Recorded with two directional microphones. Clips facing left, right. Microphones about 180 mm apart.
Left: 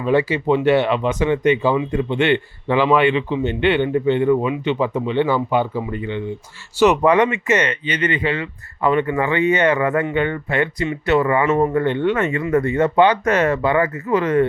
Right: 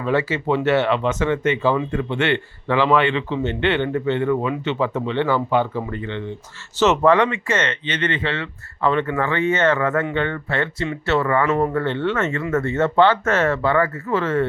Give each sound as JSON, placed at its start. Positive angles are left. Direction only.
{"t": 0.0, "sound": "speech", "side_deg": 15}